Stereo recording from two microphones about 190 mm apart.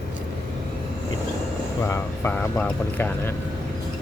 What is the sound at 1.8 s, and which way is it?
Vehicle, 15° left (ahead or behind).